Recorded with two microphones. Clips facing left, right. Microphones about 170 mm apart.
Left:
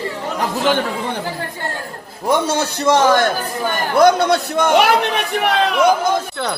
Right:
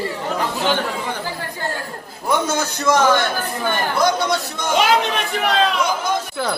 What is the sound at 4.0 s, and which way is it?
Speech, 60° left (ahead or behind).